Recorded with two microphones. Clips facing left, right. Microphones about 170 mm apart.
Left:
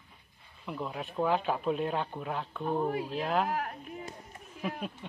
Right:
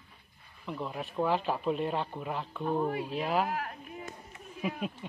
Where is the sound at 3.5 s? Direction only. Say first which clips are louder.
Left 2 dB; 40° left (ahead or behind).